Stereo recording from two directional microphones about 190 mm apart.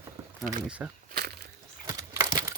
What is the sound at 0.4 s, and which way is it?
Speech, 5° right (ahead or behind).